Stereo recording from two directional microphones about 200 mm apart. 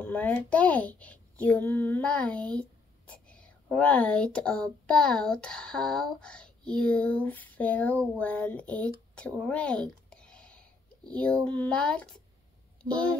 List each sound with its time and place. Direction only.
0.0 s a child's voice: 10° left (ahead or behind)
12.8 s speech: 25° right (ahead or behind)